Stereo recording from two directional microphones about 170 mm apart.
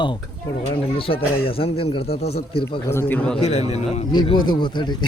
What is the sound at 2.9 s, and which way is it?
Speech, 15° left (ahead or behind).